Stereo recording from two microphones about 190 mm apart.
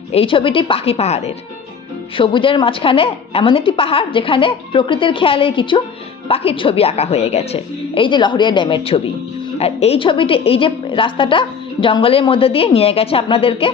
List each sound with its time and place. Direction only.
0.1 s a woman's voice: 30° left (ahead or behind)